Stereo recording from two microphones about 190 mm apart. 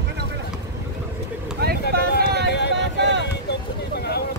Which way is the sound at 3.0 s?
70° right (ahead or behind).